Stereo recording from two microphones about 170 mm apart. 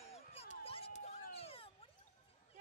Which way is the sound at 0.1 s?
35° left (ahead or behind).